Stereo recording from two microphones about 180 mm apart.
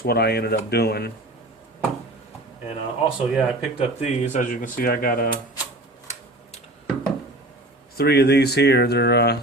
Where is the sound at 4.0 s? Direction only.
40° left (ahead or behind).